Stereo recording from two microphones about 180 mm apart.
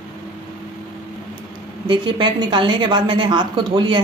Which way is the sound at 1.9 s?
25° right (ahead or behind).